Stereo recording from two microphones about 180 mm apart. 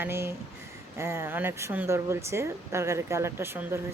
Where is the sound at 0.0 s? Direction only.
15° right (ahead or behind).